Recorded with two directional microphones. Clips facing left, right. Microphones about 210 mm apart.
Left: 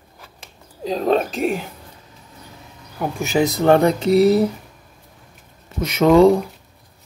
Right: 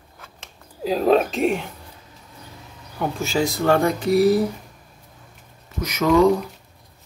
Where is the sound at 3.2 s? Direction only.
20° left (ahead or behind).